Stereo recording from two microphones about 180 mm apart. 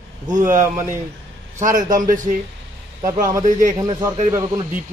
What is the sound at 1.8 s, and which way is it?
Speech, 50° right (ahead or behind).